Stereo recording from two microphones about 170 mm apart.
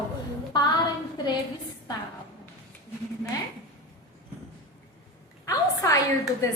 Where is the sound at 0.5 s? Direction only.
25° left (ahead or behind).